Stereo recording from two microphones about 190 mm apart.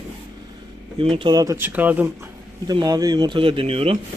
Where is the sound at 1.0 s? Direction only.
30° right (ahead or behind); by 2.1 s 10° right (ahead or behind).